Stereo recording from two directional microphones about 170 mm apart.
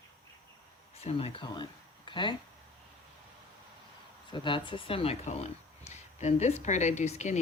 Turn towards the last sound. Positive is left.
turn(degrees=40)  # may be behind; listen again after turning